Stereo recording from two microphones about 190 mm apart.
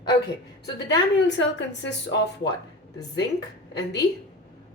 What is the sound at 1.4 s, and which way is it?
Speech, 70° left (ahead or behind).